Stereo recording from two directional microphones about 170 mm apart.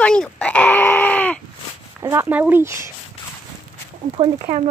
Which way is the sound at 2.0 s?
15° right (ahead or behind).